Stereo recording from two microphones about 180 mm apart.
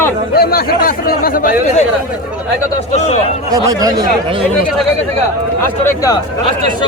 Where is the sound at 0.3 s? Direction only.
60° left (ahead or behind).